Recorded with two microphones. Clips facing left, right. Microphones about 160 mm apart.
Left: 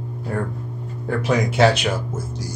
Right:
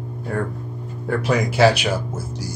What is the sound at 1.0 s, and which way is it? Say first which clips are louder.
Speech: even; centre (ahead or behind).